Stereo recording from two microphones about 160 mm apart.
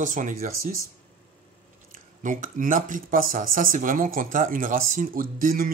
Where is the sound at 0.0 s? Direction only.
55° right (ahead or behind).